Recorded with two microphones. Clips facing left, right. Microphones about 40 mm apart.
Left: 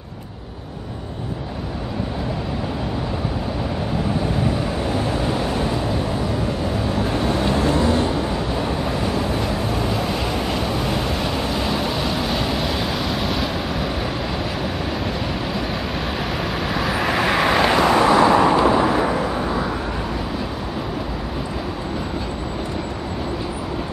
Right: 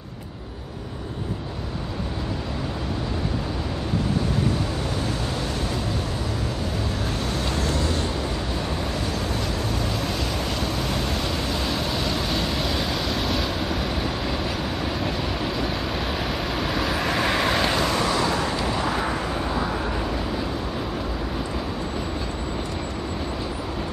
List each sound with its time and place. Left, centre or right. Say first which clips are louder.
7.0 s vehicle: left 7 dB; left
15.0 s vehicle: left 2 dB; centre; by 18.9 s left
18.9 s vehicle: left 6 dB; centre